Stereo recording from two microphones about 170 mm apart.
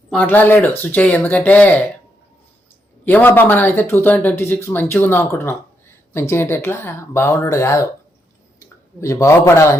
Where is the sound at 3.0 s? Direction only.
10° left (ahead or behind).